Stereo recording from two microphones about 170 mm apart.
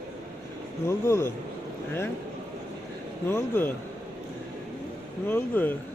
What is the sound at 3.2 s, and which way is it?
Speech, 15° left (ahead or behind).